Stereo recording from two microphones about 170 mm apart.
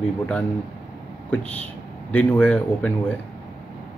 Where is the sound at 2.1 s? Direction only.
10° left (ahead or behind).